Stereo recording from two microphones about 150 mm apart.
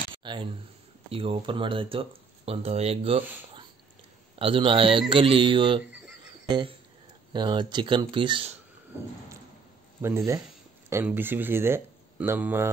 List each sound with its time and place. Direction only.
0.2 s a sound: 30° right (ahead or behind)
1.1 s speech: 35° right (ahead or behind)
4.4 s speech: 35° right (ahead or behind)
10.0 s speech: 20° right (ahead or behind)